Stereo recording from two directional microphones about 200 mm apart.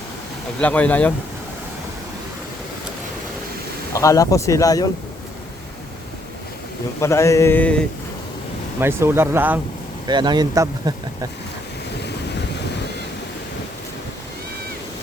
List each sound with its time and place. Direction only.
0.6 s speech: 5° left (ahead or behind)
3.9 s speech: 15° left (ahead or behind)
7.0 s speech: 15° left (ahead or behind)
8.8 s speech: 10° right (ahead or behind)
10.1 s speech: 20° right (ahead or behind)